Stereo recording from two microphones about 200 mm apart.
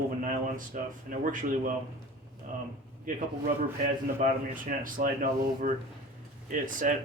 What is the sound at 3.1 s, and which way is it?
Speech, 40° right (ahead or behind).